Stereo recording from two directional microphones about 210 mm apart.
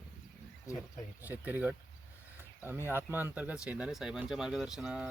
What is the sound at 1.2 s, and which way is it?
Speech, 10° right (ahead or behind).